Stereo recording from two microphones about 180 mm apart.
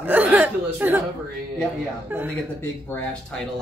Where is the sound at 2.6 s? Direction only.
10° left (ahead or behind).